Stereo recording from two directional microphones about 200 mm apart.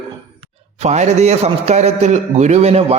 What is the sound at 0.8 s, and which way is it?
A man's voice, 35° right (ahead or behind).